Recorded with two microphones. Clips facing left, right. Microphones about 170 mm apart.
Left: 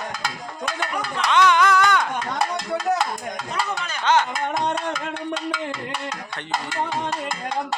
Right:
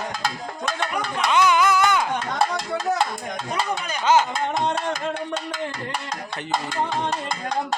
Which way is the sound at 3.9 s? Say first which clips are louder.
Right 2 dB; 10° right (ahead or behind).